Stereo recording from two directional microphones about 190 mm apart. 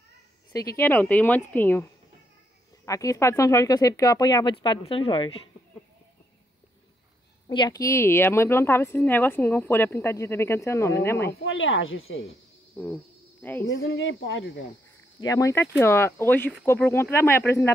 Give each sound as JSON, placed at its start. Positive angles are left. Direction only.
{"t": 0.5, "sound": "speech", "side_deg": 20}
{"t": 7.4, "sound": "speech", "side_deg": 20}
{"t": 11.4, "sound": "speech", "side_deg": 90}
{"t": 12.8, "sound": "speech", "side_deg": 10}
{"t": 13.7, "sound": "speech", "side_deg": 80}
{"t": 15.1, "sound": "speech", "side_deg": 20}